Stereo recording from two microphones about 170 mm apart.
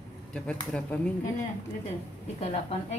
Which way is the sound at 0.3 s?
5° left (ahead or behind).